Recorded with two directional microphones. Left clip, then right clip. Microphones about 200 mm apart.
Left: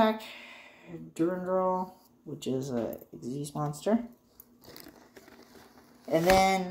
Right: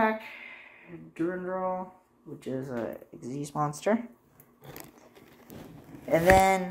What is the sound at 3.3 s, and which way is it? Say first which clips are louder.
Speech: even; 15° left (ahead or behind).